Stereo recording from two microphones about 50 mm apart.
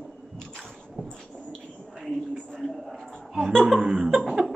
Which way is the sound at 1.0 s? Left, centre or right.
Right.